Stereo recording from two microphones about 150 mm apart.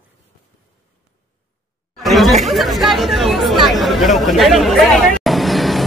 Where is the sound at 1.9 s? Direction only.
Centre (ahead or behind).